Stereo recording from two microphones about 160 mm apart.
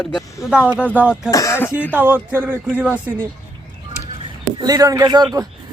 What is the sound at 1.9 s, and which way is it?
Speech, 10° right (ahead or behind).